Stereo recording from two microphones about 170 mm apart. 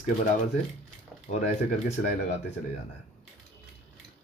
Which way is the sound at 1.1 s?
Centre (ahead or behind).